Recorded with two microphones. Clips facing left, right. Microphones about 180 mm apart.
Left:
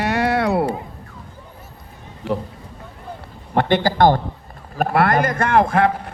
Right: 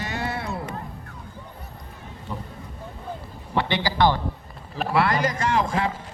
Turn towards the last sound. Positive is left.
turn(degrees=60)  # may be behind; listen again after turning